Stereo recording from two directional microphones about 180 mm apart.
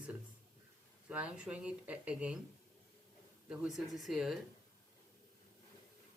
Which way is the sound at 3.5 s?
Centre (ahead or behind).